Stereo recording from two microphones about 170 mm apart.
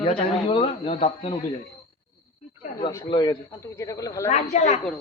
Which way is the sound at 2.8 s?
25° left (ahead or behind).